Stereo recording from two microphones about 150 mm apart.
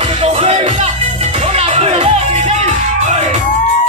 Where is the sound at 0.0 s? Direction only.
40° right (ahead or behind).